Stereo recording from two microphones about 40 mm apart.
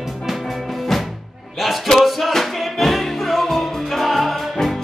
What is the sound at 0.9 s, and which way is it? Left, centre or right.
Music, centre.